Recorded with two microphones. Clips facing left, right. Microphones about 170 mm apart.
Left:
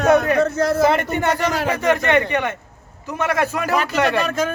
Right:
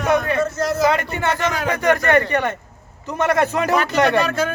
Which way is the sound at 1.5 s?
30° left (ahead or behind).